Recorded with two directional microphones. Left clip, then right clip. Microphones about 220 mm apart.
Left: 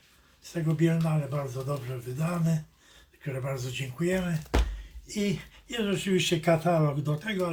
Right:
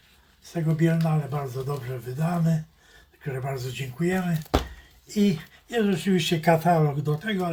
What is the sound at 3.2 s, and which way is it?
Speech, 15° left (ahead or behind).